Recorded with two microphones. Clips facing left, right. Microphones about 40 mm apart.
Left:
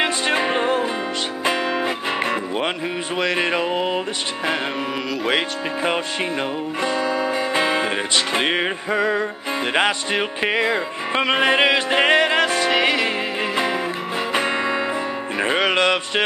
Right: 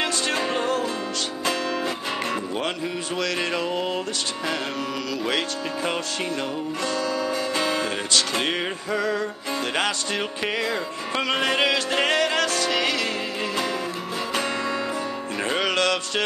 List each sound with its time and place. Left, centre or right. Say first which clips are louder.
0.0 s music: left 5 dB; left
6.8 s music: left 5 dB; left
14.3 s music: left 5 dB; left